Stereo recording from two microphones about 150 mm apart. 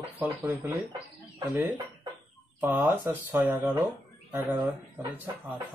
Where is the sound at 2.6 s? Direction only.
15° right (ahead or behind).